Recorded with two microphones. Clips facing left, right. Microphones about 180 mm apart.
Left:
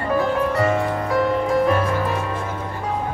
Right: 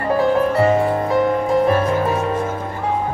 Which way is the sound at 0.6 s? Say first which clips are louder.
Right 4 dB; 30° right (ahead or behind).